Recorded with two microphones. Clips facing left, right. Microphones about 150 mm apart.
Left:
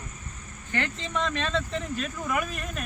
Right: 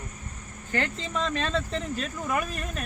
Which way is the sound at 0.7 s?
35° right (ahead or behind).